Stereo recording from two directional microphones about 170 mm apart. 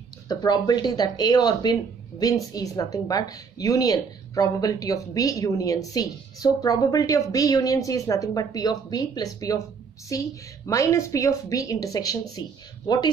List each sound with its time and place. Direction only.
0.3 s speech: 25° left (ahead or behind)